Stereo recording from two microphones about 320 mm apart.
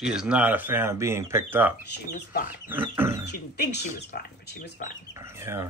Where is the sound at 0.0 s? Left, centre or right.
Centre.